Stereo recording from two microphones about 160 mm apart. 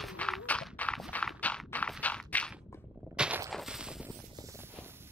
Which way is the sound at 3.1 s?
5° right (ahead or behind).